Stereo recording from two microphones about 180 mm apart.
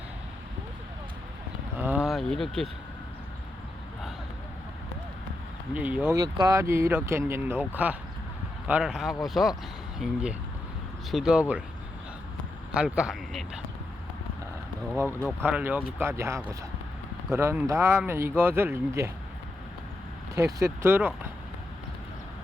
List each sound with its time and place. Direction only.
1.8 s speech: 10° right (ahead or behind)
5.7 s speech: 10° right (ahead or behind)
12.7 s speech: 5° right (ahead or behind)
15.4 s speech: 10° right (ahead or behind)
20.3 s speech: 15° right (ahead or behind)